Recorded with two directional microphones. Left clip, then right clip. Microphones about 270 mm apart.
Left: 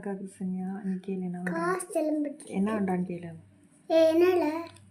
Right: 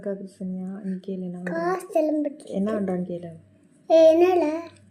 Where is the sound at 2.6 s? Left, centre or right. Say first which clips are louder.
Right 3 dB; right.